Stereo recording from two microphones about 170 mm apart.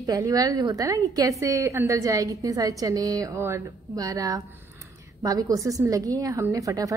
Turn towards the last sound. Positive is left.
turn(degrees=-20)  # may be behind; listen again after turning